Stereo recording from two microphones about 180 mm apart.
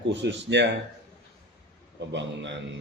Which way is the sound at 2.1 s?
80° right.